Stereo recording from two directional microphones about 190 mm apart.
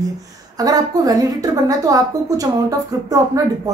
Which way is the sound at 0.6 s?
20° right (ahead or behind).